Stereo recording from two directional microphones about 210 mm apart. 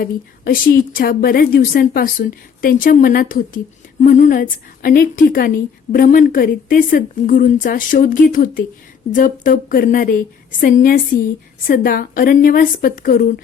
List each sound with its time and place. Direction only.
0.0 s a woman's voice: 40° left (ahead or behind)